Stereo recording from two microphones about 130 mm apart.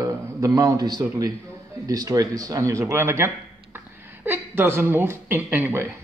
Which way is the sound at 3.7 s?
15° right (ahead or behind).